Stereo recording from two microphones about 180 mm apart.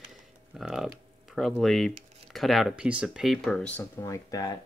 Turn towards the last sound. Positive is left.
turn(degrees=20)  # may be behind; listen again after turning